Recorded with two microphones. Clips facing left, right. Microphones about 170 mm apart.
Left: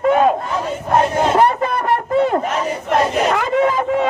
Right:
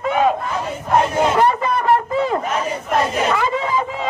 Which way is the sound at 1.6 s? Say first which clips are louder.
Right 1 dB; 60° left (ahead or behind).